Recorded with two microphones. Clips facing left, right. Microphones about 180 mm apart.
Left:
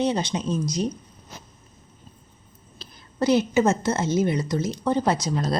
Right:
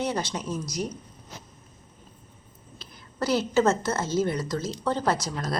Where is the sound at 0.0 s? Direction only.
20° left (ahead or behind).